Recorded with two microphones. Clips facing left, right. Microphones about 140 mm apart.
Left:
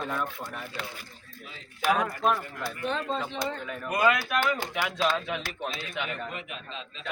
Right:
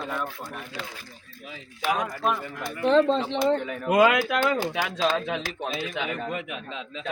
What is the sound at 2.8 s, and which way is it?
Speech, 90° right.